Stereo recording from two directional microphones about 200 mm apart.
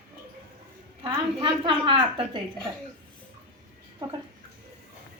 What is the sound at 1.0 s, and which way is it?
A woman's voice, 25° right (ahead or behind).